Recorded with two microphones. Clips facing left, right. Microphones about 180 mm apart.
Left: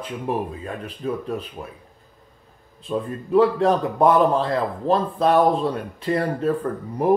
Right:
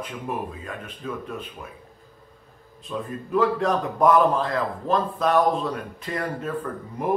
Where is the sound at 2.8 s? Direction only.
30° left (ahead or behind).